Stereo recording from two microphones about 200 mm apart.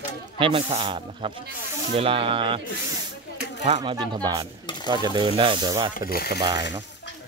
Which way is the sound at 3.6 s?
30° right (ahead or behind).